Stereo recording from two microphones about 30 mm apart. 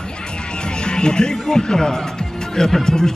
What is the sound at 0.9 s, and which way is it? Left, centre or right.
A woman's voice, left.